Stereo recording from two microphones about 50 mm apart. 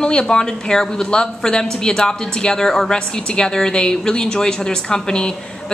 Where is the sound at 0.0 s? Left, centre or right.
Centre.